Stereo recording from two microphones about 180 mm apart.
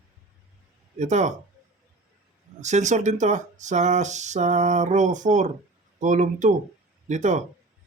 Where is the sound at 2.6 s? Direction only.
40° right (ahead or behind).